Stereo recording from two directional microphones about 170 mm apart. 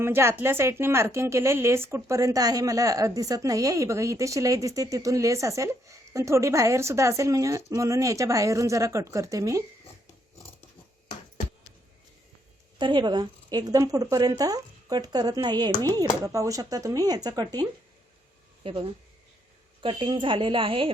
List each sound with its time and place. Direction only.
0.0 s a woman's voice: 15° right (ahead or behind)
12.8 s a woman's voice: 25° right (ahead or behind)